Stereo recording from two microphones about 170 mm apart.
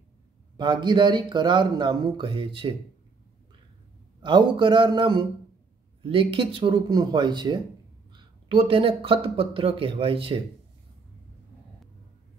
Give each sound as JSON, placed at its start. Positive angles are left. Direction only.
{"t": 0.6, "sound": "speech", "side_deg": -25}
{"t": 4.2, "sound": "speech", "side_deg": -25}